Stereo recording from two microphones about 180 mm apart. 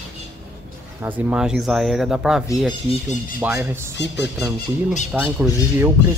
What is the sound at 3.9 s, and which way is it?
Speech, 75° left (ahead or behind).